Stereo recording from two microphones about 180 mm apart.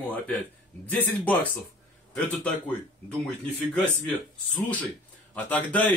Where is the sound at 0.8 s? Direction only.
10° left (ahead or behind).